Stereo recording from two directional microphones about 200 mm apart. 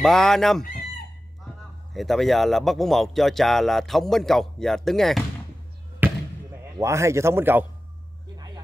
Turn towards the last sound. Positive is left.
turn(degrees=-10)  # may be behind; listen again after turning